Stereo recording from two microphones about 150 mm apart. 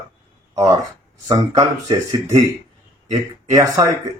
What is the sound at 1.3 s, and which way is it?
Speech, 25° right (ahead or behind).